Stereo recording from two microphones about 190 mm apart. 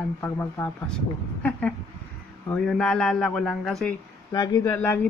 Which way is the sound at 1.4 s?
5° left (ahead or behind).